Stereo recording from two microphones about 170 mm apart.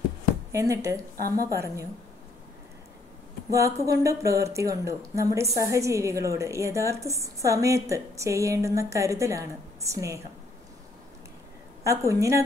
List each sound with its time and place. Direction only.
0.5 s a woman's voice: 15° right (ahead or behind)
3.4 s a woman's voice: 20° right (ahead or behind)
11.8 s a woman's voice: 20° right (ahead or behind)